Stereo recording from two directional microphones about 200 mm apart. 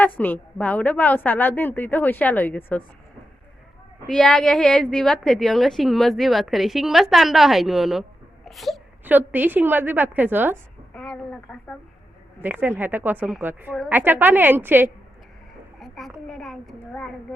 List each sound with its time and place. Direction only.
0.2 s a woman's voice: 10° left (ahead or behind)
4.0 s a woman's voice: 5° left (ahead or behind)
10.9 s a woman's voice: 5° left (ahead or behind)
12.4 s a woman's voice: 10° right (ahead or behind)
15.8 s a sound: centre (ahead or behind)
16.2 s a woman's voice: centre (ahead or behind)